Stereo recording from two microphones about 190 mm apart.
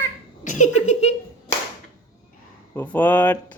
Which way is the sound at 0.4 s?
40° left (ahead or behind).